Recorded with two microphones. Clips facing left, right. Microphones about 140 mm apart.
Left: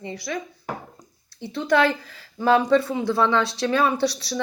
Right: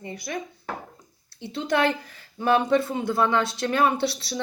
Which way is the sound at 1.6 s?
20° right (ahead or behind).